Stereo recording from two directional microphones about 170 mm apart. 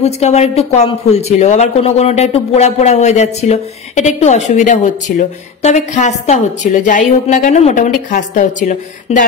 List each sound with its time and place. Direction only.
0.0 s a woman's voice: 40° left (ahead or behind)